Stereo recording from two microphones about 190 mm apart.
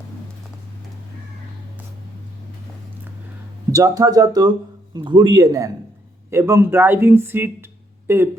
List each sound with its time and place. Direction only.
3.7 s speech: 20° right (ahead or behind)